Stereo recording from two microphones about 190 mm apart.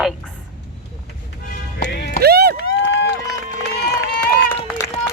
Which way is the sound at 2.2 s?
55° right (ahead or behind).